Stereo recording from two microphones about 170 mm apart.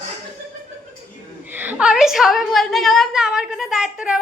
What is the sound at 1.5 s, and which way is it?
A woman's voice, 10° right (ahead or behind).